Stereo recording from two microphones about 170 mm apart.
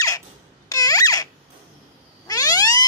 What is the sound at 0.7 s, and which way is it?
Squeak, 20° left (ahead or behind).